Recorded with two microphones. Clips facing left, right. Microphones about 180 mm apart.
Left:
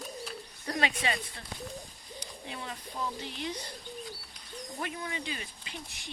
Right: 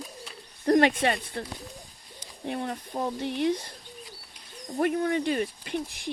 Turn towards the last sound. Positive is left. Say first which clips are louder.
# right 14 dB
turn(degrees=-55)  # may be behind; listen again after turning